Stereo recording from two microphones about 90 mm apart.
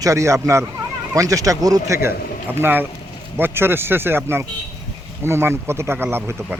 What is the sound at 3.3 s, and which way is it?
Speech, 25° right (ahead or behind).